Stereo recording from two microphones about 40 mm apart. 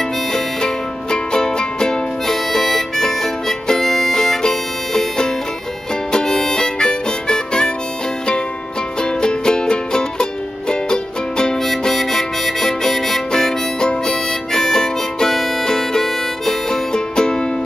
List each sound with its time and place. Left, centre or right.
1.1 s music: centre
6.1 s harmonica: centre
9.2 s music: centre
11.6 s harmonica: centre
13.3 s harmonica: centre